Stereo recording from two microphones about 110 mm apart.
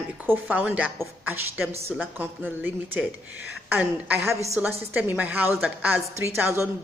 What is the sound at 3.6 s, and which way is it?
A woman's voice, 15° right (ahead or behind).